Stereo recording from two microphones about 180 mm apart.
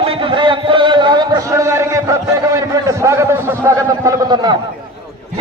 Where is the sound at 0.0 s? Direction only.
30° right (ahead or behind).